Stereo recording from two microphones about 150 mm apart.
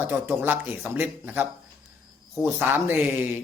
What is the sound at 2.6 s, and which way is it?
Speech, 15° right (ahead or behind).